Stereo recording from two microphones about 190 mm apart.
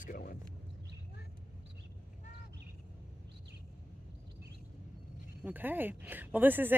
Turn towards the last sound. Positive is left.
turn(degrees=-10)  # may be behind; listen again after turning